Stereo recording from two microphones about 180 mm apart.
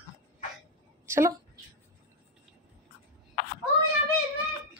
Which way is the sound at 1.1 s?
15° right (ahead or behind).